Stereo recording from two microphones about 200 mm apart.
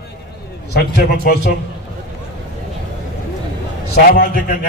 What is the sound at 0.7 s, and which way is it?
Speech, 55° left (ahead or behind).